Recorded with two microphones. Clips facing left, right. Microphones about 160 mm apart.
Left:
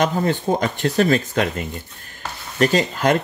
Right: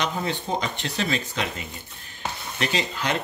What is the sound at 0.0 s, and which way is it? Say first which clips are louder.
Speech: left 8 dB; 50° left (ahead or behind).